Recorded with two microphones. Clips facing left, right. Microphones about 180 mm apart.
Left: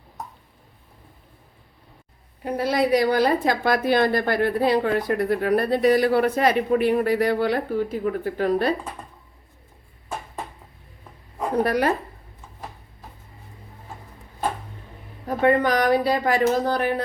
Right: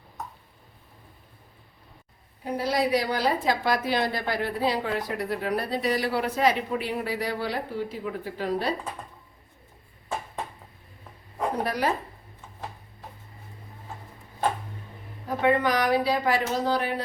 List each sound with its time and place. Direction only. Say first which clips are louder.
2.4 s a woman's voice: left 4 dB; 60° left (ahead or behind)
11.6 s a woman's voice: left 7 dB; 60° left (ahead or behind)
15.4 s speech: left 4 dB; 50° left (ahead or behind)